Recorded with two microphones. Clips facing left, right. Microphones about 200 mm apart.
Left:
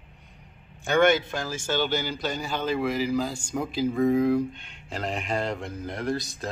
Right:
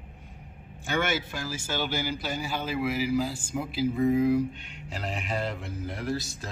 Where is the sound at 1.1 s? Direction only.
5° right (ahead or behind).